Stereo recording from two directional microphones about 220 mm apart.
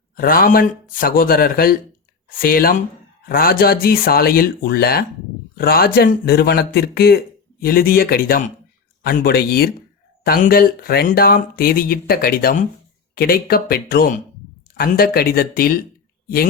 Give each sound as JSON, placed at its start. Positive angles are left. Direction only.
{"t": 0.2, "sound": "speech", "side_deg": 40}